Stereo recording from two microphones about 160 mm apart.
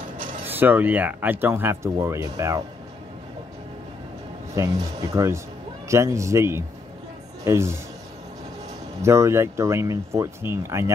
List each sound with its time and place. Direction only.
0.5 s speech: 10° right (ahead or behind)
4.6 s speech: 25° right (ahead or behind)
9.0 s speech: 15° right (ahead or behind)